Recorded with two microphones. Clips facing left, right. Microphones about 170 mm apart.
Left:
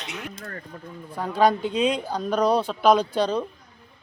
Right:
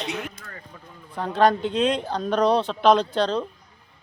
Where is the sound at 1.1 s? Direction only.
5° left (ahead or behind).